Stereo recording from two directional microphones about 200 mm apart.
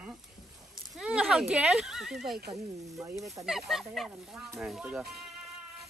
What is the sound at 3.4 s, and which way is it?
Speech, centre (ahead or behind).